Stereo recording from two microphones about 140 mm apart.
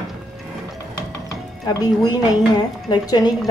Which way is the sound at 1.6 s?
30° left (ahead or behind).